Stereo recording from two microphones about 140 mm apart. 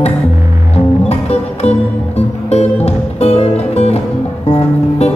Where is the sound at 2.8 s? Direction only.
50° left (ahead or behind).